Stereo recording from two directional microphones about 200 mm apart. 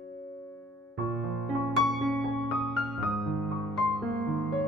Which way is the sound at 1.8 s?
Centre (ahead or behind).